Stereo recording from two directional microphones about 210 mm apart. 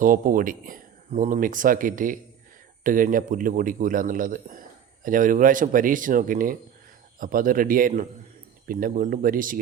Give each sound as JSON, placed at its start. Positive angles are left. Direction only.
{"t": 0.0, "sound": "speech", "side_deg": -40}